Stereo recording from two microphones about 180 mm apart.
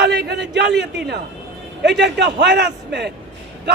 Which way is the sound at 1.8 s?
70° right (ahead or behind).